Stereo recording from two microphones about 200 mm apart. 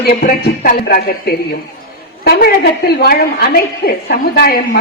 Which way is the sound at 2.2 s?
50° left (ahead or behind).